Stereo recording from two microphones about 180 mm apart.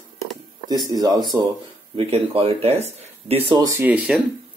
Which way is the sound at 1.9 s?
30° right (ahead or behind).